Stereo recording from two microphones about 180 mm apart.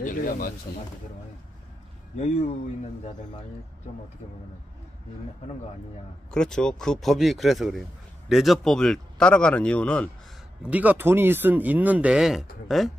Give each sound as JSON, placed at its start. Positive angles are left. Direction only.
{"t": 0.0, "sound": "speech", "side_deg": 50}
{"t": 2.1, "sound": "speech", "side_deg": 40}
{"t": 6.3, "sound": "speech", "side_deg": 5}
{"t": 10.6, "sound": "speech", "side_deg": -10}